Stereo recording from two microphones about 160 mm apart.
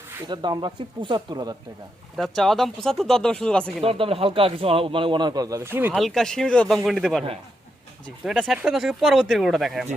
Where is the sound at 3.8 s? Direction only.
35° right (ahead or behind); by 5.9 s 15° right (ahead or behind).